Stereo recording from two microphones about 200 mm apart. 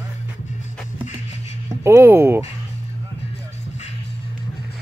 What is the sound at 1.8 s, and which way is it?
Speech, 10° right (ahead or behind).